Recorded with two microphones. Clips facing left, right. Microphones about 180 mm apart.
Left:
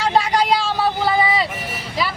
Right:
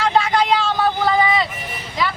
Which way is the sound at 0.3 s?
35° left (ahead or behind).